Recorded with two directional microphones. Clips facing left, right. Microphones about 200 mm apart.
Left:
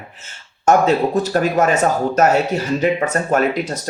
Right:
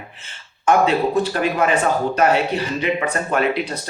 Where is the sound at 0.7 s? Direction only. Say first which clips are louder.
Left 2 dB; 40° left (ahead or behind).